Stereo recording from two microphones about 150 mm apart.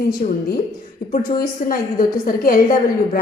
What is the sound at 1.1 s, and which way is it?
A woman's voice, 70° left (ahead or behind).